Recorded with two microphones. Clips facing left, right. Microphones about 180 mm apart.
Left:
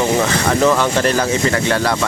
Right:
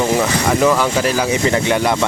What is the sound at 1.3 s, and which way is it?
Speech, 20° right (ahead or behind).